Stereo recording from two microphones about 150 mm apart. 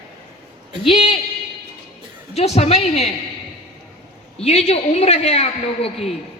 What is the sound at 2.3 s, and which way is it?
Speech, 45° left (ahead or behind).